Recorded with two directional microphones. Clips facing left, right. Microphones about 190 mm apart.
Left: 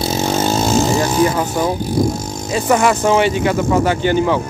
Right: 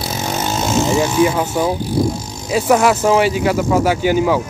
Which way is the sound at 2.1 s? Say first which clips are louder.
Left 4 dB; 50° left (ahead or behind).